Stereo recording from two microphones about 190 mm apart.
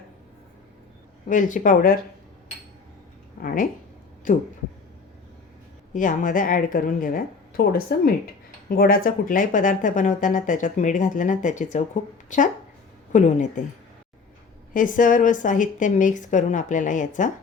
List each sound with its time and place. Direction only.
1.3 s speech: 45° left (ahead or behind)
3.4 s speech: 45° left (ahead or behind)
5.9 s a woman's voice: 45° left (ahead or behind)
14.7 s speech: 45° left (ahead or behind)